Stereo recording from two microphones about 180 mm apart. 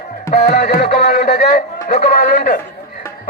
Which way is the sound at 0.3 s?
35° left (ahead or behind).